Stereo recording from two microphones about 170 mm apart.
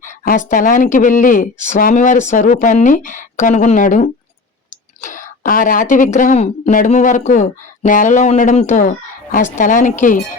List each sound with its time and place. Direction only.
0.0 s speech: 50° left (ahead or behind)